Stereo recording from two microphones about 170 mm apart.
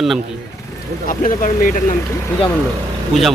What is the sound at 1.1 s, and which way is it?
Speech, 50° left (ahead or behind).